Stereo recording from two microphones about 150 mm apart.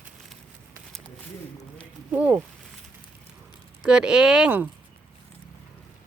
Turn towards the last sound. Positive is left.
turn(degrees=-10)  # may be behind; listen again after turning